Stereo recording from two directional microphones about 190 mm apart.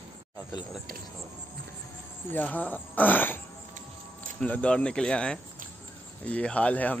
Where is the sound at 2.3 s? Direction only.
10° left (ahead or behind).